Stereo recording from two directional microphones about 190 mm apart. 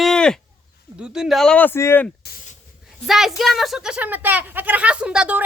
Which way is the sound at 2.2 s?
50° left (ahead or behind).